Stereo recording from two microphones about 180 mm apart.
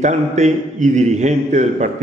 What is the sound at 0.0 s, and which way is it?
A man's voice, 40° right (ahead or behind).